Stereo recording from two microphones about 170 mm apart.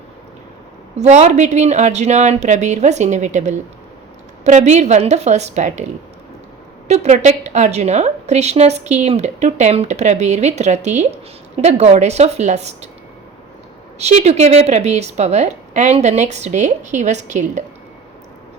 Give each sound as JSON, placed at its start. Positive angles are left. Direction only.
{"t": 0.9, "sound": "a woman's voice", "side_deg": -40}
{"t": 6.8, "sound": "a woman's voice", "side_deg": -40}
{"t": 14.0, "sound": "a woman's voice", "side_deg": -40}